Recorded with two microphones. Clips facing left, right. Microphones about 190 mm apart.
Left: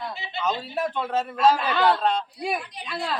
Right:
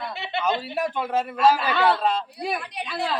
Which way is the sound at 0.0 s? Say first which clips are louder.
Right 3 dB; 65° right (ahead or behind).